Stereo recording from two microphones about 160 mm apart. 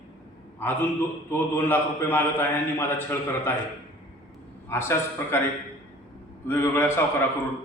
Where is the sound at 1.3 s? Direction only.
15° left (ahead or behind).